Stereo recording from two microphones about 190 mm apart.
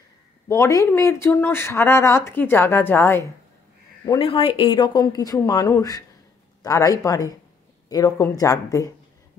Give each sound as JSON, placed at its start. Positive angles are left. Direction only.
{"t": 0.5, "sound": "speech", "side_deg": 15}
{"t": 4.0, "sound": "speech", "side_deg": 25}